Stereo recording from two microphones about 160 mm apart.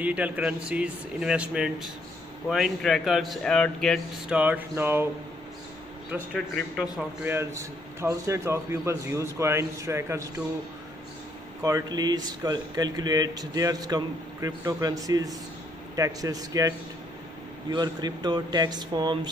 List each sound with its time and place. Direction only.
0.0 s a man's voice: 10° right (ahead or behind)
6.3 s a man's voice: 5° left (ahead or behind)
7.0 s a man's voice: 15° right (ahead or behind)
11.6 s speech: 25° right (ahead or behind)